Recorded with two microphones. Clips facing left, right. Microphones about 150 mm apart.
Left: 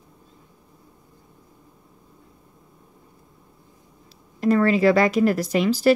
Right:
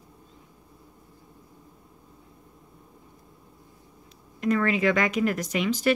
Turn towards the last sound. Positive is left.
turn(degrees=35)  # may be behind; listen again after turning